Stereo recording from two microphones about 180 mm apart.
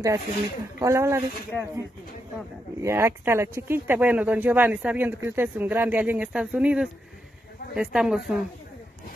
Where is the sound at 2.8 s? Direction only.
15° right (ahead or behind).